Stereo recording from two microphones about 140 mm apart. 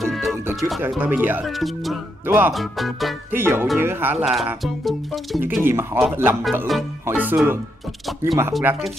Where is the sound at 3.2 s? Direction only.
15° right (ahead or behind).